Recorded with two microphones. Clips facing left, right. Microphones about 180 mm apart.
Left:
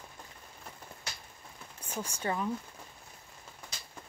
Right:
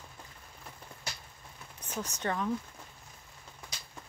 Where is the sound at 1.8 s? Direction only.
10° left (ahead or behind).